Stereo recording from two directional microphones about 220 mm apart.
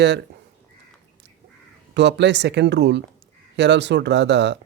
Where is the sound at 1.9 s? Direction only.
50° right (ahead or behind).